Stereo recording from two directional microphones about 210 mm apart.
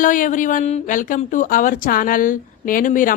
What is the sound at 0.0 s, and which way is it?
Speech, 40° left (ahead or behind).